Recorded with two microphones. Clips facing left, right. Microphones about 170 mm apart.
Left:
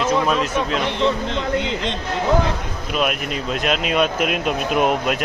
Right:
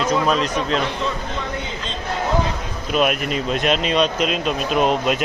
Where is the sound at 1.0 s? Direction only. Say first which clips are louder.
Left 5 dB; 75° left (ahead or behind).